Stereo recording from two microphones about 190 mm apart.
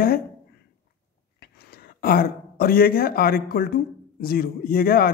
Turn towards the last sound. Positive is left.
turn(degrees=50)  # may be behind; listen again after turning